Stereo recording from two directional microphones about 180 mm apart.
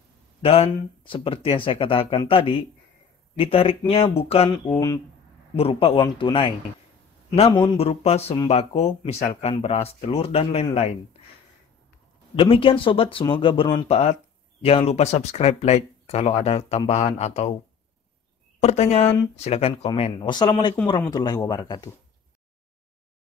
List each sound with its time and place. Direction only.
0.4 s speech: 30° left (ahead or behind)
4.7 s speech: 20° left (ahead or behind)
5.6 s speech: 35° left (ahead or behind)
7.6 s speech: 35° left (ahead or behind)
12.4 s speech: 30° left (ahead or behind)
13.8 s speech: 35° left (ahead or behind)
18.6 s speech: 35° left (ahead or behind)
20.2 s speech: 25° left (ahead or behind)